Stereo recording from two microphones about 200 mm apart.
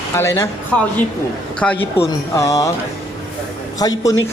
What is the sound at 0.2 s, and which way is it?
Speech, 15° left (ahead or behind).